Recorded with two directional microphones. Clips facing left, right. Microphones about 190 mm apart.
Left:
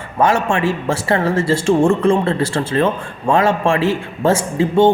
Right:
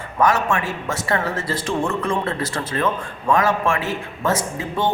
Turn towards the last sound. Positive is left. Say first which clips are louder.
# left 10 dB
turn(degrees=25)  # may be behind; listen again after turning